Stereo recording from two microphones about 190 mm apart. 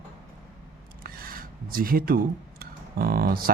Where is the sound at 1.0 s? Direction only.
50° right (ahead or behind).